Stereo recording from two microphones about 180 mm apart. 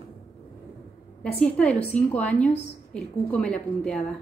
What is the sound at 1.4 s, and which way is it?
A woman's voice, 5° left (ahead or behind).